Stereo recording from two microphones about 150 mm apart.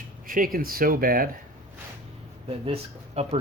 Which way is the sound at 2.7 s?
45° right (ahead or behind).